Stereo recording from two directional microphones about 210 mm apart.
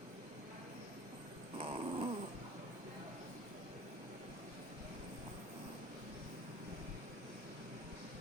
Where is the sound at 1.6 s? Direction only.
25° right (ahead or behind).